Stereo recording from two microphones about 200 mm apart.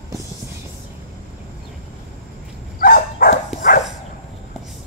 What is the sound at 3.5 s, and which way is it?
Dog, centre (ahead or behind).